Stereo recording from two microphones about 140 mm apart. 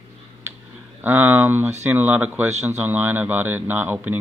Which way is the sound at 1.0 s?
15° right (ahead or behind).